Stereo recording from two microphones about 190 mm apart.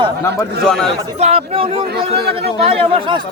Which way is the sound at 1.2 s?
35° right (ahead or behind).